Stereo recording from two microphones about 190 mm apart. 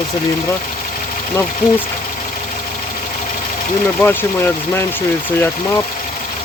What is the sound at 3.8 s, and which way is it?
Speech, 10° left (ahead or behind).